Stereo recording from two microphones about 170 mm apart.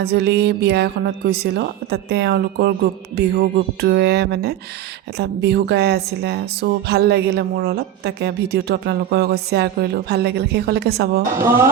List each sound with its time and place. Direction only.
0.0 s speech: 75° right (ahead or behind)
11.3 s speech: 15° right (ahead or behind)